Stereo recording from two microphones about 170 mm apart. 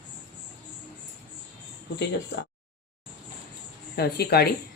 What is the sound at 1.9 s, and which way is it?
Speech, 90° left.